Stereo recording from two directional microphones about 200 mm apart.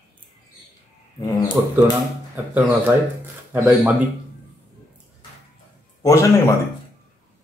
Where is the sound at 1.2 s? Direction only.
20° left (ahead or behind).